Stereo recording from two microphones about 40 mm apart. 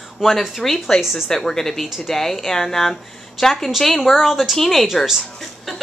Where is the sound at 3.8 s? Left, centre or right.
Centre.